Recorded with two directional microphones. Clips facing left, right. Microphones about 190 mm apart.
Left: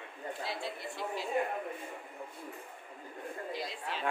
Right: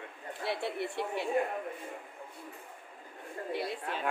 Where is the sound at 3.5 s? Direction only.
60° right (ahead or behind).